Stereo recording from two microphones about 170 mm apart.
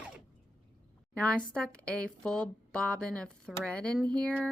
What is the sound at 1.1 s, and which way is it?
Speech, 5° left (ahead or behind).